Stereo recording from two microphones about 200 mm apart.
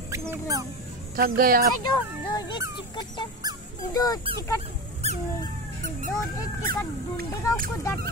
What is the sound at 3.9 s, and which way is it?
Speech, 20° left (ahead or behind).